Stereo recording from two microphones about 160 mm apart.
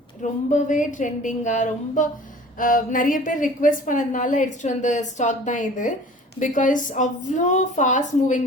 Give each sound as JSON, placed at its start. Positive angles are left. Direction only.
{"t": 0.2, "sound": "a woman's voice", "side_deg": 50}